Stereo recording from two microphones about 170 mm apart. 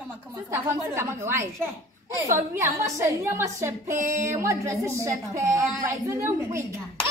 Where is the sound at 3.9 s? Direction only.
50° right (ahead or behind).